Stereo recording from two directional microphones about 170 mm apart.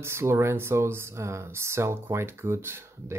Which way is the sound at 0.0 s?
15° right (ahead or behind).